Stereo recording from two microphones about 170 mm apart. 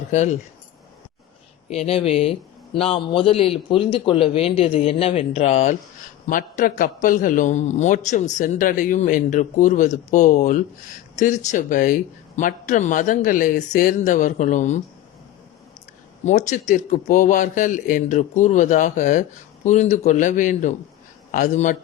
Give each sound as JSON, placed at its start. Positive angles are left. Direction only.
{"t": 0.1, "sound": "a man's voice", "side_deg": 45}
{"t": 1.7, "sound": "a man's voice", "side_deg": 35}
{"t": 6.2, "sound": "a man's voice", "side_deg": 50}
{"t": 16.2, "sound": "a man's voice", "side_deg": 45}